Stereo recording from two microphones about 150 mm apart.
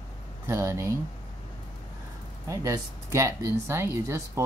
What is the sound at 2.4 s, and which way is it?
Speech, 20° right (ahead or behind).